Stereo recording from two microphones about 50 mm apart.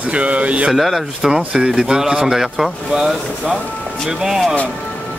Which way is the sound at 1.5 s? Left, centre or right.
Centre.